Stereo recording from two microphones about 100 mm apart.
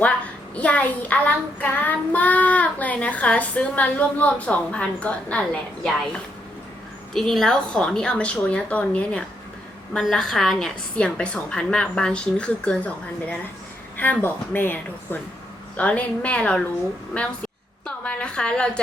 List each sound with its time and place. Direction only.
0.0 s a child's voice: 10° left (ahead or behind)
13.9 s a child's voice: 20° left (ahead or behind)
17.8 s a sound: 10° left (ahead or behind)